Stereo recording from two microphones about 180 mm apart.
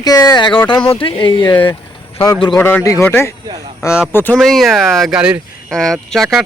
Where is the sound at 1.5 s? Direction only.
10° left (ahead or behind).